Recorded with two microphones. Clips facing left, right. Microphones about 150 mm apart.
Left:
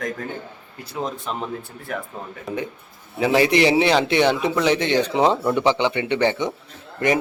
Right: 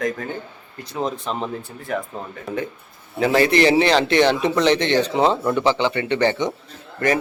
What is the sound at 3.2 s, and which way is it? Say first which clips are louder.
Speech: right 1 dB; 15° left (ahead or behind).